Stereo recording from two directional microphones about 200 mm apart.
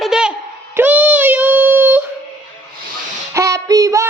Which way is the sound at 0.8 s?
10° right (ahead or behind).